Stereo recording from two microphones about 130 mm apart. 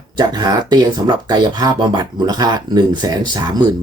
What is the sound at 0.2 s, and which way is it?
Speech, 35° right (ahead or behind).